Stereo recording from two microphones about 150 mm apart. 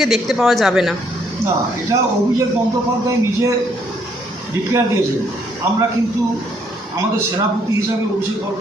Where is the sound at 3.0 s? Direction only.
20° right (ahead or behind).